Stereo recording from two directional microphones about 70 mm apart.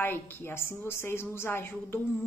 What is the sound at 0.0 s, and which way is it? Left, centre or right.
A woman's voice, left.